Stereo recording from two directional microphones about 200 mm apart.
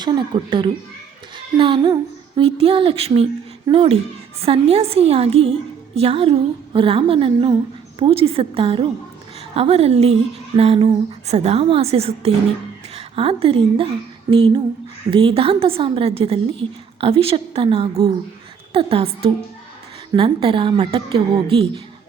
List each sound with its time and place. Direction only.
0.0 s a woman's voice: 25° right (ahead or behind)